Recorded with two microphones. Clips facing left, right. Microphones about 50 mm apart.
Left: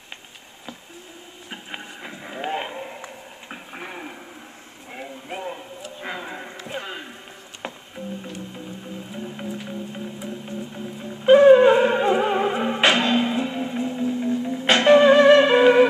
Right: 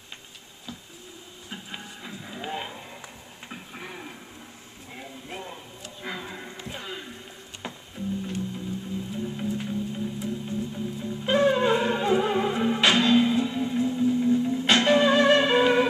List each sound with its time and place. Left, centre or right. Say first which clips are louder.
1.5 s a sound: left 3 dB; left
7.6 s music: left 4 dB; left
9.1 s music: right 1 dB; left